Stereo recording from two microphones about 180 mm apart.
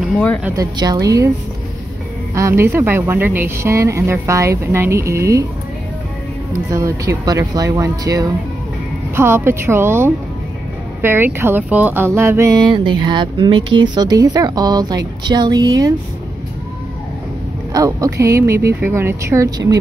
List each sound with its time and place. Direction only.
0.4 s a woman's voice: 10° right (ahead or behind)
2.3 s speech: 15° right (ahead or behind)
6.7 s a woman's voice: 20° right (ahead or behind)
17.7 s speech: 20° right (ahead or behind)